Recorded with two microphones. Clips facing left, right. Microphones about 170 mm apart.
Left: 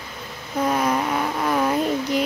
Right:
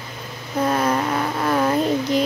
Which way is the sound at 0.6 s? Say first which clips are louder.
Right 1 dB; 10° left (ahead or behind).